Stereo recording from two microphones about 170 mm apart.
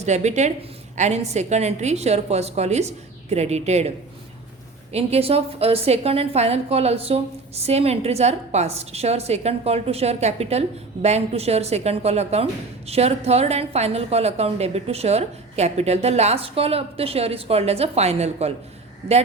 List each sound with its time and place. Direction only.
0.0 s a woman's voice: 40° right (ahead or behind)